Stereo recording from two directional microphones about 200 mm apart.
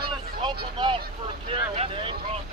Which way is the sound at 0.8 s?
20° right (ahead or behind).